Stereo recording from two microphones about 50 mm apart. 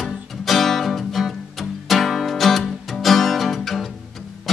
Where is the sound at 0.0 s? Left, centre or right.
Centre.